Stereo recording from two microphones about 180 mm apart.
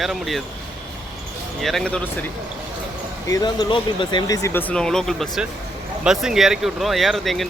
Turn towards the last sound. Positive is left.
turn(degrees=0)  # may be behind; listen again after turning